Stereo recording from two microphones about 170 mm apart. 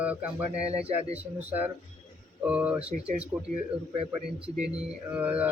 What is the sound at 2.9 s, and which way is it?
Speech, 35° right (ahead or behind).